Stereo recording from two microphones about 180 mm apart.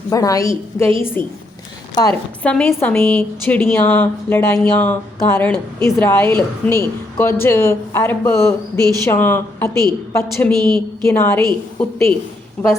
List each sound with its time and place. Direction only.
0.1 s a woman's voice: 20° left (ahead or behind)
2.4 s a woman's voice: 5° left (ahead or behind)
10.6 s a woman's voice: 5° left (ahead or behind)